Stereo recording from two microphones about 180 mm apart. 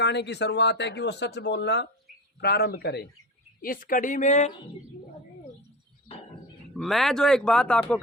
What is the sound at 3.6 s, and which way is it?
Speech, 50° left (ahead or behind).